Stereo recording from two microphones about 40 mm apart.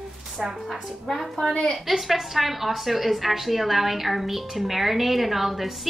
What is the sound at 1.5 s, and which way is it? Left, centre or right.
Speech, left.